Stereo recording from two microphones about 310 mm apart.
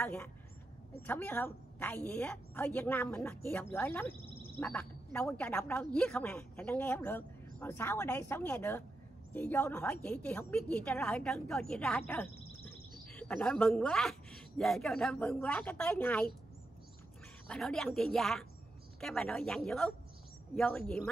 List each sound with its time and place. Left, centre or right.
0.0 s speech: centre
13.1 s speech: centre
17.5 s speech: centre